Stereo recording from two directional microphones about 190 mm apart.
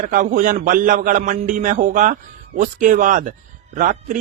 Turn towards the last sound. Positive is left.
turn(degrees=-45)  # may be behind; listen again after turning